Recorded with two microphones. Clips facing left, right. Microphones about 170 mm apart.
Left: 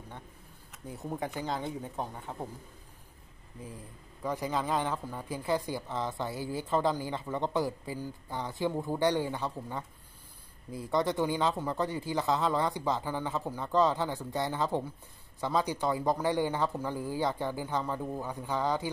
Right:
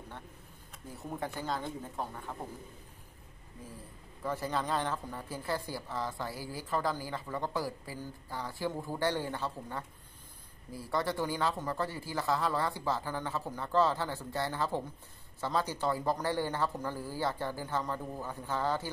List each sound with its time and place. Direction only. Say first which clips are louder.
0.9 s a woman's voice: left 3 dB; 15° left (ahead or behind)
4.2 s a woman's voice: left 2 dB; 15° left (ahead or behind)